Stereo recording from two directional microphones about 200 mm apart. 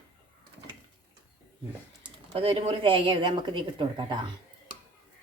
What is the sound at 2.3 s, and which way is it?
A woman's voice, 25° right (ahead or behind).